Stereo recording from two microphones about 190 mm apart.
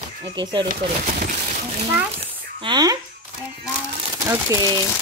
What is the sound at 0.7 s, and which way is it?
Speech, 50° right (ahead or behind).